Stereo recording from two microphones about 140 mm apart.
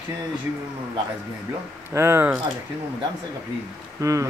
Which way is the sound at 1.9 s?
15° right (ahead or behind).